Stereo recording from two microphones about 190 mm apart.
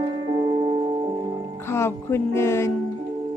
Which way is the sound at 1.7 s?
15° left (ahead or behind).